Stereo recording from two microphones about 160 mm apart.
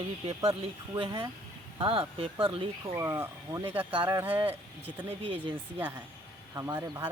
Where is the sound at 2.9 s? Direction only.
15° right (ahead or behind).